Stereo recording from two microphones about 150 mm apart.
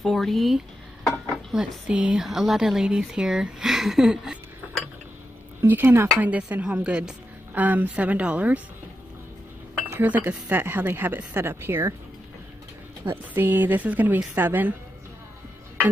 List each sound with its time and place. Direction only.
0.0 s speech: centre (ahead or behind)
5.6 s speech: 15° right (ahead or behind)
9.8 s speech: 10° right (ahead or behind)
13.0 s speech: 15° right (ahead or behind)